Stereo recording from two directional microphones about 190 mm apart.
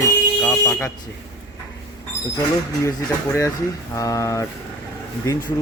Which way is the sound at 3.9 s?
15° left (ahead or behind).